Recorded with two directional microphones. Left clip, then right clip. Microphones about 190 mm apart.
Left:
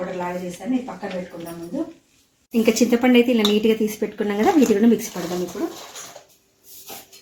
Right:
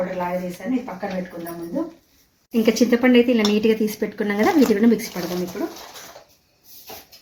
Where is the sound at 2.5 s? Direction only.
5° left (ahead or behind).